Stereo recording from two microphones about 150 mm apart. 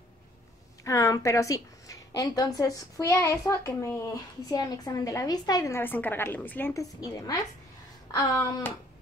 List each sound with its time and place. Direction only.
0.8 s a woman's voice: 20° left (ahead or behind)